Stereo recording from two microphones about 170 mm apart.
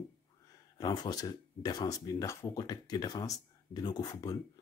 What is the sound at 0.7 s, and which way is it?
Speech, 25° left (ahead or behind).